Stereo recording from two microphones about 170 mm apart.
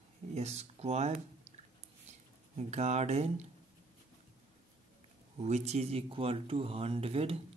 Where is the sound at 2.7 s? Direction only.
40° right (ahead or behind).